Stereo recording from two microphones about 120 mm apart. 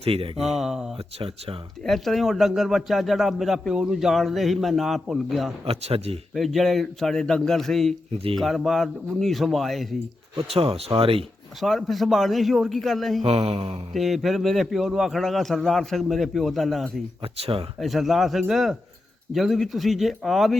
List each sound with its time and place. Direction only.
0.0 s speech: 50° right (ahead or behind)
0.3 s a man's voice: 5° right (ahead or behind)
5.6 s speech: 60° right (ahead or behind)
6.3 s a man's voice: centre (ahead or behind)
10.5 s speech: 55° right (ahead or behind)
11.6 s a man's voice: centre (ahead or behind)
13.2 s speech: 60° right (ahead or behind)
13.9 s a man's voice: centre (ahead or behind)
17.3 s speech: 55° right (ahead or behind)
17.7 s a man's voice: centre (ahead or behind)